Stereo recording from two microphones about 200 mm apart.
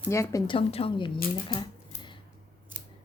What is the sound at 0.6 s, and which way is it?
Speech, 30° left (ahead or behind).